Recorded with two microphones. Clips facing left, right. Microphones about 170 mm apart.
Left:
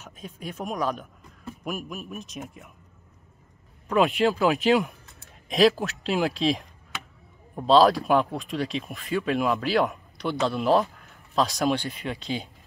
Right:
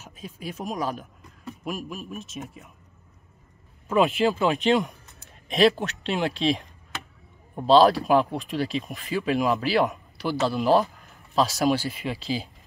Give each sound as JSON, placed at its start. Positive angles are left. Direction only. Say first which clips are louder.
{"t": 0.0, "sound": "speech", "louder": "right 1 dB", "side_deg": -10}
{"t": 3.8, "sound": "speech", "louder": "even", "side_deg": 0}